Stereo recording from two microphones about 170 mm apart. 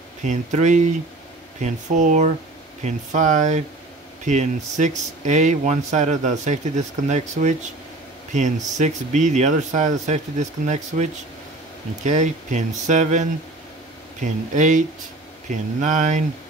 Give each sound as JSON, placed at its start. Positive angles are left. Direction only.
{"t": 0.2, "sound": "speech", "side_deg": -45}